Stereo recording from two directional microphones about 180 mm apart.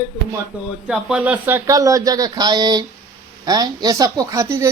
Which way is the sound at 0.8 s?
5° right (ahead or behind).